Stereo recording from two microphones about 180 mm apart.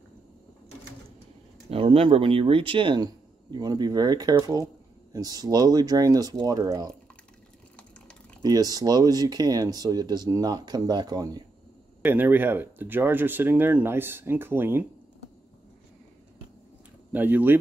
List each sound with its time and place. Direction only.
1.7 s speech: 30° right (ahead or behind)
8.4 s speech: 20° right (ahead or behind)
12.0 s speech: 10° right (ahead or behind)
17.1 s speech: 10° right (ahead or behind)